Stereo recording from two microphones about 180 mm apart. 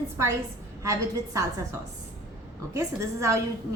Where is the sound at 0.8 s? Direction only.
15° right (ahead or behind).